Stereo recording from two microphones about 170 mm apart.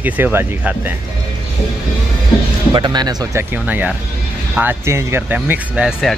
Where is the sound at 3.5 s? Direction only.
10° right (ahead or behind).